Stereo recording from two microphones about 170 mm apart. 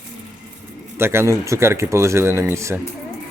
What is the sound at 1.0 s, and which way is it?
Speech, 15° right (ahead or behind).